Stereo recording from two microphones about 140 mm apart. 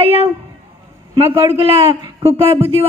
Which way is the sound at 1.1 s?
40° right (ahead or behind).